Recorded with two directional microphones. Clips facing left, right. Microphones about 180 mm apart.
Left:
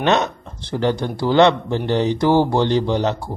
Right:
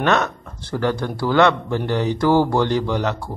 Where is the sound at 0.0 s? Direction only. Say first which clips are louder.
Left 1 dB; 25° left (ahead or behind).